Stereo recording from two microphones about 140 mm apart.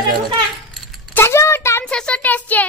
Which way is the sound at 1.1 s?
20° left (ahead or behind).